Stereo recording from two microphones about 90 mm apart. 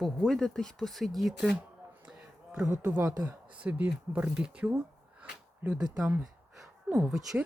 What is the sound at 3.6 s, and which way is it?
Speech, 15° right (ahead or behind).